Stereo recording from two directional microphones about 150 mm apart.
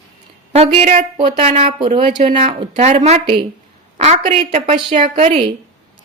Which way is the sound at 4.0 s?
45° right (ahead or behind).